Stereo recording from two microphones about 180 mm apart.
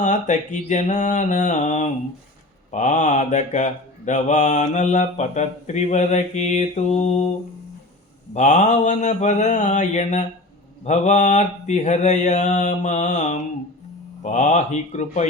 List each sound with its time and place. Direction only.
0.0 s mantra: 45° left (ahead or behind)
8.3 s mantra: 40° left (ahead or behind)